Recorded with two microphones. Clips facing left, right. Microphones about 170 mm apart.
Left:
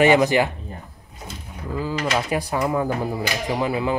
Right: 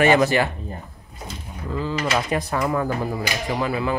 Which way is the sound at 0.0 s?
15° left (ahead or behind).